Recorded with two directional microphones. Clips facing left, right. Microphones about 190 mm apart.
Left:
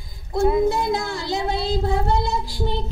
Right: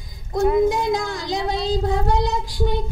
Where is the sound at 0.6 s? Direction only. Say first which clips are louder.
Right 1 dB; 15° right (ahead or behind).